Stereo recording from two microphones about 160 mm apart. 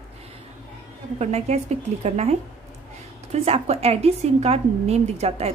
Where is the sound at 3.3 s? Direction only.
40° right (ahead or behind).